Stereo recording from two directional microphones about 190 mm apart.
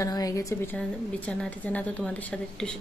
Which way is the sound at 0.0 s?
20° left (ahead or behind).